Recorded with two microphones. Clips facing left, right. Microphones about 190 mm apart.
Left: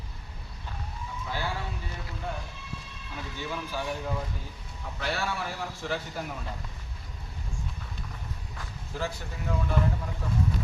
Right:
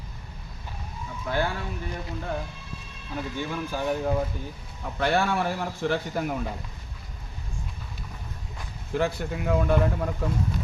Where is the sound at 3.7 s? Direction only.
50° right (ahead or behind).